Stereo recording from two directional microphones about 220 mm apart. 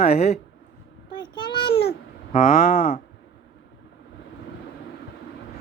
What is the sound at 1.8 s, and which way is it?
Cat, 40° left (ahead or behind).